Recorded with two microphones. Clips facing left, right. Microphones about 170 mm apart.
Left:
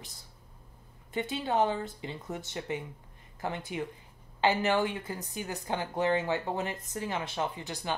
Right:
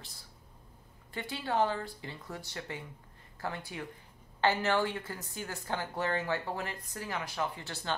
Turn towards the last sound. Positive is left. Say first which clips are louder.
# left 2 dB
turn(degrees=15)  # may be behind; listen again after turning